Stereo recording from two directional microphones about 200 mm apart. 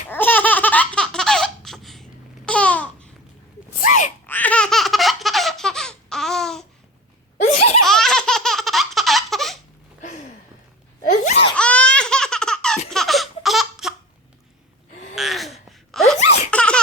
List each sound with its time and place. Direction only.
0.1 s laughter: 10° left (ahead or behind)
2.5 s babbling: 5° left (ahead or behind)
4.3 s laughter: 10° left (ahead or behind)
7.4 s laughter: 35° left (ahead or behind)
7.9 s laughter: centre (ahead or behind)
10.0 s a sound: 35° left (ahead or behind)
11.0 s laughter: 35° left (ahead or behind)
11.5 s laughter: 5° left (ahead or behind)
15.1 s gasp: centre (ahead or behind)
15.5 s a sound: centre (ahead or behind)
16.5 s laughter: 5° left (ahead or behind)